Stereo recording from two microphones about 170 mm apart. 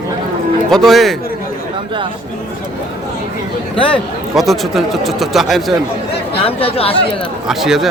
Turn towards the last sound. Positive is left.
turn(degrees=0)  # may be behind; listen again after turning